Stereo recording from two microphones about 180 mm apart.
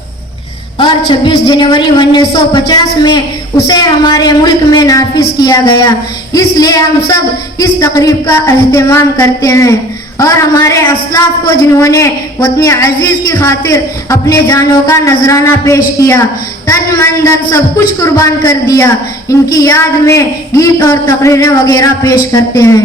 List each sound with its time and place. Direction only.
0.8 s a woman's voice: 25° left (ahead or behind)